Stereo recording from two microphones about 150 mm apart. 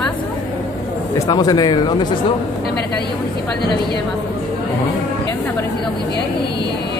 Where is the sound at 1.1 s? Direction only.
25° left (ahead or behind).